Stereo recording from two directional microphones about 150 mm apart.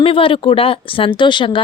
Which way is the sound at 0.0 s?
35° left (ahead or behind).